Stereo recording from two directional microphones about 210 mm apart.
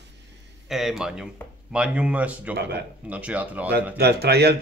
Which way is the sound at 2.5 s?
50° right (ahead or behind).